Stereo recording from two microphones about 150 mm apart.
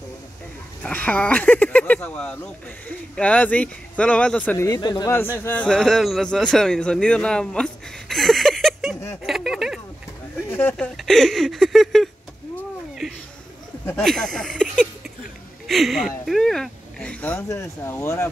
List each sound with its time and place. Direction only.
0.8 s speech: 10° left (ahead or behind)
4.6 s speech: 30° left (ahead or behind)
5.1 s speech: 15° left (ahead or behind)
9.2 s a sound: centre (ahead or behind)
10.5 s speech: 15° left (ahead or behind)
11.0 s a sound: centre (ahead or behind)
14.0 s speech: 5° left (ahead or behind); by 18.3 s 20° left (ahead or behind)